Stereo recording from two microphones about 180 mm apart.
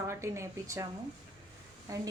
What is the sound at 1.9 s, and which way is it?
Speech, 20° right (ahead or behind).